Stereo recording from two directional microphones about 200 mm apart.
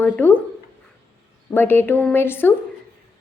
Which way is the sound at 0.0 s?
10° left (ahead or behind).